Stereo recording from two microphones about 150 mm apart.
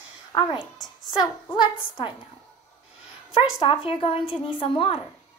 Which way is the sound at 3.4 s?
35° left (ahead or behind).